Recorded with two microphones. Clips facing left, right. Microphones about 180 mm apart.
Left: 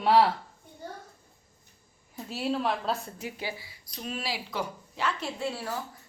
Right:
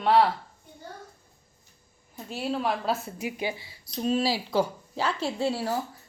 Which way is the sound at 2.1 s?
Centre (ahead or behind).